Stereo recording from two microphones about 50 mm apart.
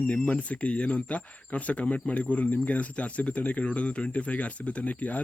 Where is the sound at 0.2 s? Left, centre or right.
Left.